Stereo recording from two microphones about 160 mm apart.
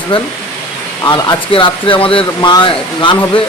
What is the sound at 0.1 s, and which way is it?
Speech, 35° left (ahead or behind).